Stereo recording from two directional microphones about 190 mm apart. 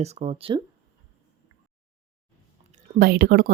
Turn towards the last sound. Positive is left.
turn(degrees=-50)  # may be behind; listen again after turning